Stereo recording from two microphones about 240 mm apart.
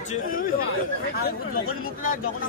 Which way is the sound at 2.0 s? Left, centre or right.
Left.